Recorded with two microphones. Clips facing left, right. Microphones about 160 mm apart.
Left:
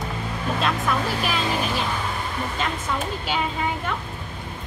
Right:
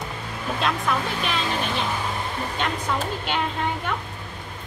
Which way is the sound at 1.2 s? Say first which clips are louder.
Left 1 dB; 5° left (ahead or behind).